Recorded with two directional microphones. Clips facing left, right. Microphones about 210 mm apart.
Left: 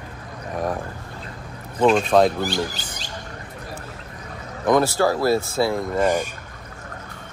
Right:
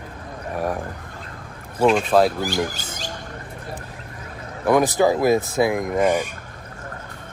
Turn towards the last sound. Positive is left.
turn(degrees=-10)  # may be behind; listen again after turning